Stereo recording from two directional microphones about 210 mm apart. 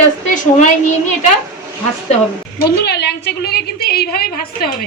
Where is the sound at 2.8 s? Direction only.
50° left (ahead or behind).